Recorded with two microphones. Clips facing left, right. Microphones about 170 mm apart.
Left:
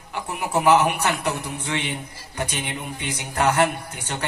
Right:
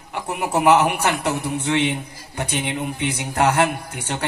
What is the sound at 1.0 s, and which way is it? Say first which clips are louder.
Speech: right 3 dB; 65° right (ahead or behind).